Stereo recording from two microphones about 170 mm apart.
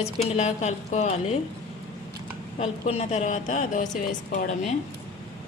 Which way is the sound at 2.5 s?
40° left (ahead or behind).